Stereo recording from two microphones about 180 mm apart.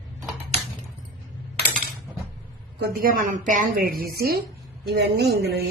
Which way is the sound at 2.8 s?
55° right (ahead or behind).